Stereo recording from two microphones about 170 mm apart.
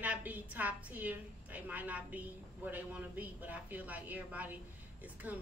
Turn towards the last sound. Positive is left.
turn(degrees=-10)  # may be behind; listen again after turning